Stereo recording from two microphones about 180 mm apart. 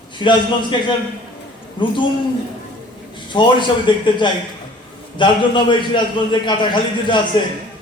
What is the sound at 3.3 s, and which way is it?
A man's voice, 25° left (ahead or behind).